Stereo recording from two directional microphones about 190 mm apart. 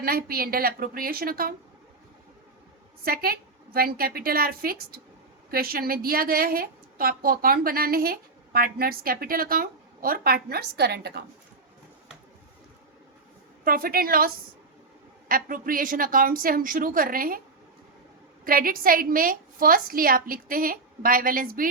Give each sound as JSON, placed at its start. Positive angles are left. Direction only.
{"t": 0.0, "sound": "a woman's voice", "side_deg": -55}
{"t": 3.0, "sound": "a woman's voice", "side_deg": -50}
{"t": 13.7, "sound": "a woman's voice", "side_deg": -50}
{"t": 18.4, "sound": "a woman's voice", "side_deg": -50}